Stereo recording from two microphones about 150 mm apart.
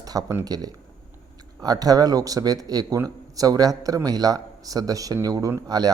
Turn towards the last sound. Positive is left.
turn(degrees=-25)  # may be behind; listen again after turning